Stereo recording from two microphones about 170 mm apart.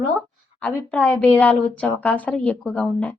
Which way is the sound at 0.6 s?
5° left (ahead or behind).